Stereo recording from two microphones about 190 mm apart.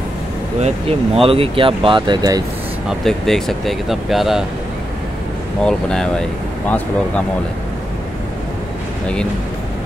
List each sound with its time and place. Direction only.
0.6 s speech: 30° right (ahead or behind)
2.9 s speech: centre (ahead or behind)
5.6 s speech: 5° left (ahead or behind)